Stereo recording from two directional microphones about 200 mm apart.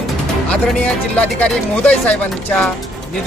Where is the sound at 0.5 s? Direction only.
5° left (ahead or behind).